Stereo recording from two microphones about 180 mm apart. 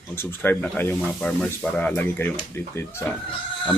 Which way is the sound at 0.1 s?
10° left (ahead or behind).